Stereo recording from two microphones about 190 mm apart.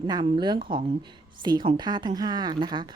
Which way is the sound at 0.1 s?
25° right (ahead or behind).